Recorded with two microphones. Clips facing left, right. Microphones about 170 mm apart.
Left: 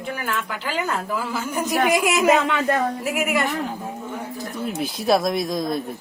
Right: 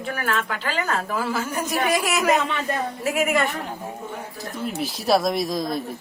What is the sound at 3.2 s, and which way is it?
Speech, 10° left (ahead or behind).